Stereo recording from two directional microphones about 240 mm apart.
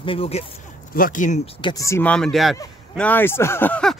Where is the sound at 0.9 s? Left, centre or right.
Left; by 3.9 s centre.